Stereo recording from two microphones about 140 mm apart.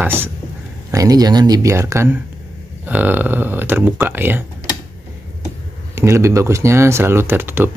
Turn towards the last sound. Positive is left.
turn(degrees=-15)  # may be behind; listen again after turning